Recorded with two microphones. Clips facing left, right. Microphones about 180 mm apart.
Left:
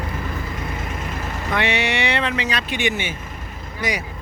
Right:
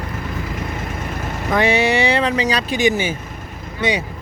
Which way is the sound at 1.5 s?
40° right (ahead or behind).